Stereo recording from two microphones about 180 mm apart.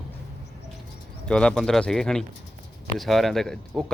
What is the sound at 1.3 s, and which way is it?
A man's voice, 5° left (ahead or behind).